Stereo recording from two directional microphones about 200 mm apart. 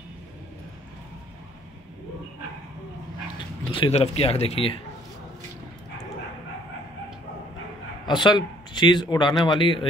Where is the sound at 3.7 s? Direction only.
30° left (ahead or behind).